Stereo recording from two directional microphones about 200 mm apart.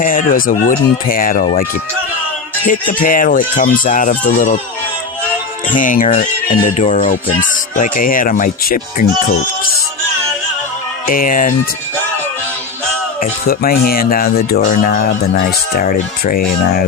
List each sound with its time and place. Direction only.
0.0 s speech: 45° left (ahead or behind)
2.6 s speech: 40° left (ahead or behind)
5.7 s speech: 40° left (ahead or behind)
11.0 s speech: 45° left (ahead or behind)
13.1 s speech: 45° left (ahead or behind)